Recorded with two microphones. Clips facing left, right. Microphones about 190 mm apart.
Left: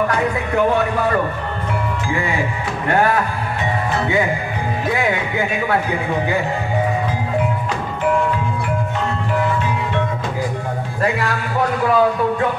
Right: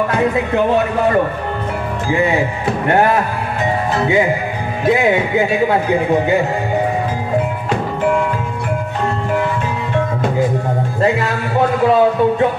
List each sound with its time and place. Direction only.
4.8 s a man's voice: 20° right (ahead or behind)
11.0 s a man's voice: 25° right (ahead or behind)